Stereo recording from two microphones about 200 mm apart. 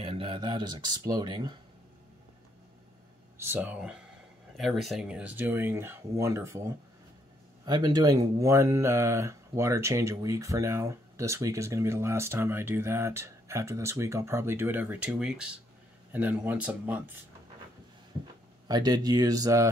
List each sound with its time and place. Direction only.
0.0 s speech: 25° right (ahead or behind)
3.3 s speech: 10° right (ahead or behind)
18.7 s speech: 20° right (ahead or behind)